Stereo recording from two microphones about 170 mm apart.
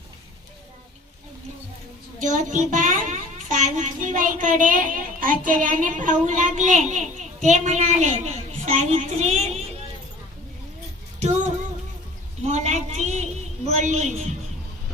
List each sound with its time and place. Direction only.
2.3 s a child's voice: 50° right (ahead or behind)
11.2 s child singing: 45° right (ahead or behind)
12.5 s a sound: 45° right (ahead or behind)
13.7 s a woman's voice: 45° right (ahead or behind)